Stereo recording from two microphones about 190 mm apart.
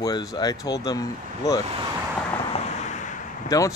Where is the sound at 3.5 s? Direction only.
15° left (ahead or behind).